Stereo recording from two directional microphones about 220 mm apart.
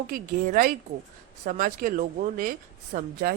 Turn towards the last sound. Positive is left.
turn(degrees=-35)  # may be behind; listen again after turning